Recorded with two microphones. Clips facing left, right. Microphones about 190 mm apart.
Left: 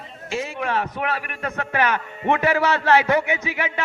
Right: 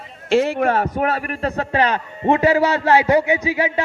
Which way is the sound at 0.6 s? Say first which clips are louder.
Right 6 dB; 45° right (ahead or behind).